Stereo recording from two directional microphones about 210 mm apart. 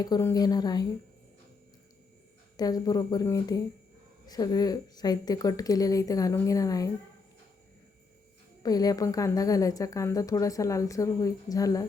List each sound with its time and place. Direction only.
0.0 s a woman's voice: 15° left (ahead or behind)
2.6 s a woman's voice: 20° left (ahead or behind)
8.6 s a woman's voice: 20° left (ahead or behind)